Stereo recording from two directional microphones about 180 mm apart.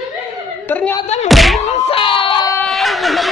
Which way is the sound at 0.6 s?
10° left (ahead or behind).